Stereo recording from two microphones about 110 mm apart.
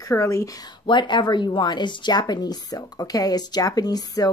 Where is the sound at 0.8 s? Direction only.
45° left (ahead or behind).